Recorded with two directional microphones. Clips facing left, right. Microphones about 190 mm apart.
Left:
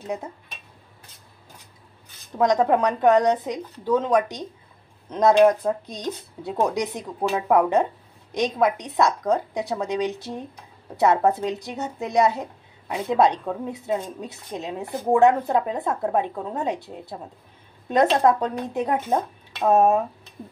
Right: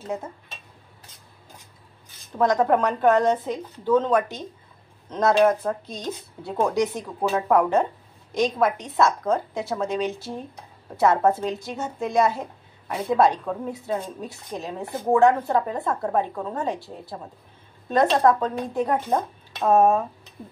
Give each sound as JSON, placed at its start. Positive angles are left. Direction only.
{"t": 2.3, "sound": "speech", "side_deg": 15}
{"t": 5.9, "sound": "a woman's voice", "side_deg": 15}